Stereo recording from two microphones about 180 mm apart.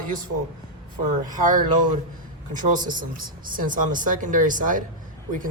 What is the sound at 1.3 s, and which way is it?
Speech, 45° right (ahead or behind).